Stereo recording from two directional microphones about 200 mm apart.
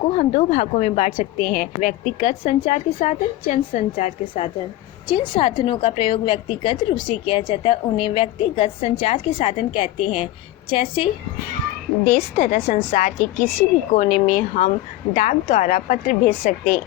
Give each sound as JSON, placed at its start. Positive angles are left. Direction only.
{"t": 0.2, "sound": "a woman's voice", "side_deg": 35}
{"t": 12.4, "sound": "a woman's voice", "side_deg": 40}